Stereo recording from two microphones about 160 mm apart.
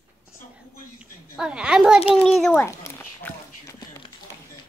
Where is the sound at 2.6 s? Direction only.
15° left (ahead or behind).